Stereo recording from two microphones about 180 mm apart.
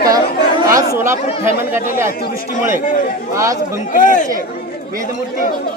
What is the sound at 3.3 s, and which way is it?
Speech, 15° right (ahead or behind).